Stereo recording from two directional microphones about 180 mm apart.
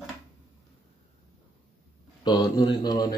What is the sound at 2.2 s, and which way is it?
Speech, 20° left (ahead or behind).